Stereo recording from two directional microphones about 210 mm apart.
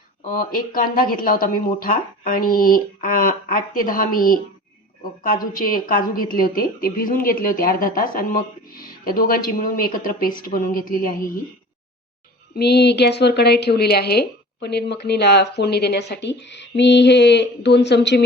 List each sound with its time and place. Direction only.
0.3 s a woman's voice: 40° left (ahead or behind)
12.5 s a woman's voice: 50° left (ahead or behind)